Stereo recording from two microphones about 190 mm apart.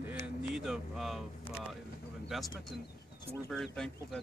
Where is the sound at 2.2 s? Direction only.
Centre (ahead or behind).